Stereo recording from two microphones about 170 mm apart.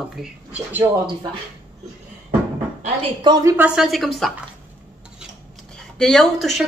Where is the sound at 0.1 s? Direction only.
5° right (ahead or behind).